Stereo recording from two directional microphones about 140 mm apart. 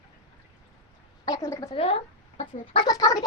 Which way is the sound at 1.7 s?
45° left (ahead or behind).